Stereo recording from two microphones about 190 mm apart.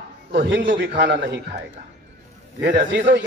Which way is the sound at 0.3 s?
55° right (ahead or behind).